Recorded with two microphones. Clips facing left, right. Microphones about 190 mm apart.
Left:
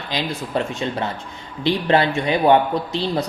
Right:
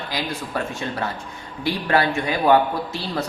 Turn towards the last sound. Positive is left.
turn(degrees=20)  # may be behind; listen again after turning